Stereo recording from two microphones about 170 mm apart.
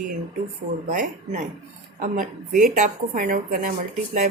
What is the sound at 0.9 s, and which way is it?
A woman's voice, 45° right (ahead or behind).